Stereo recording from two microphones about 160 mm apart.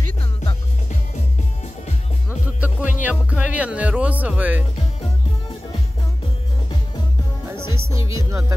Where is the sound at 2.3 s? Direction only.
10° right (ahead or behind).